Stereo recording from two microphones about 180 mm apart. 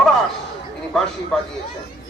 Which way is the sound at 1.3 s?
5° left (ahead or behind).